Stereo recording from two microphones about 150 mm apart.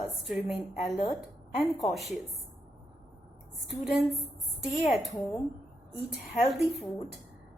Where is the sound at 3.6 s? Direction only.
Centre (ahead or behind).